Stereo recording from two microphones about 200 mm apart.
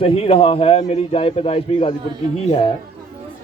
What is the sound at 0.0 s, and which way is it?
A man's voice, 30° left (ahead or behind).